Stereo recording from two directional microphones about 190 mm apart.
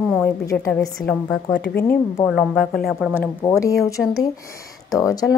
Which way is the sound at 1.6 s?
55° left (ahead or behind).